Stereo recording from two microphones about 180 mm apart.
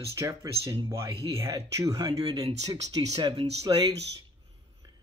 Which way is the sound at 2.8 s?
20° right (ahead or behind).